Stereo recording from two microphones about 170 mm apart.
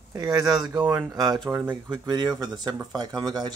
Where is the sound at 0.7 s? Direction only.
10° right (ahead or behind).